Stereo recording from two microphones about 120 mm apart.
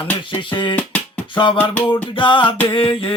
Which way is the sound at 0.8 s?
15° left (ahead or behind).